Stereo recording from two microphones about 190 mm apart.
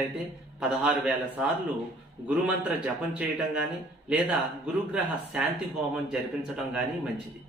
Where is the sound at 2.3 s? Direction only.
5° right (ahead or behind).